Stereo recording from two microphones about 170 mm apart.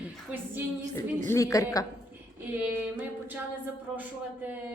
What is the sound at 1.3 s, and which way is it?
Speech, 20° left (ahead or behind).